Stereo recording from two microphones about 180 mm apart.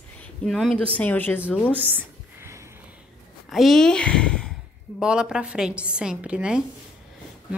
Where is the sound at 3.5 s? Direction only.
Centre (ahead or behind).